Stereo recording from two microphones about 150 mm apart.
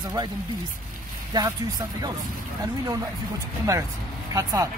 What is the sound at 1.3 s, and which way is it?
Speech, 25° right (ahead or behind).